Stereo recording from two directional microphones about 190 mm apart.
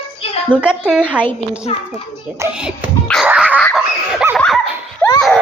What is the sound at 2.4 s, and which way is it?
Speech, 5° right (ahead or behind).